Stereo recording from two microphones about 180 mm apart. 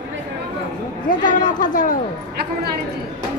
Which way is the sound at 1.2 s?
45° left (ahead or behind).